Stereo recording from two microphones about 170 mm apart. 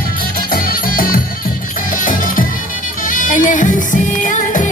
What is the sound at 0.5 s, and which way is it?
Music, 55° left (ahead or behind).